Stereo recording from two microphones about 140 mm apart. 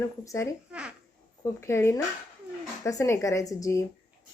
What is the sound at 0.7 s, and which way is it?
Speech, 10° right (ahead or behind).